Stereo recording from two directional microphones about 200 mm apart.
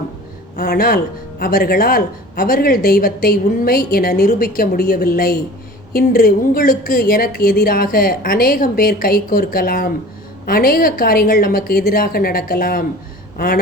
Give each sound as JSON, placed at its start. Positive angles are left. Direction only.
{"t": 0.5, "sound": "speech", "side_deg": 45}